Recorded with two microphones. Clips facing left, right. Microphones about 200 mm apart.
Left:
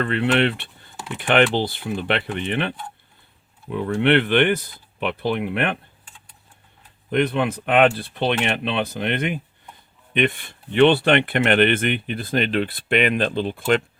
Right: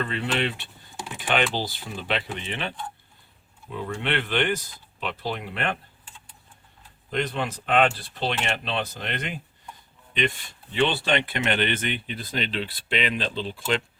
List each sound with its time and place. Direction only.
0.0 s speech: 60° left (ahead or behind)
7.1 s speech: 60° left (ahead or behind)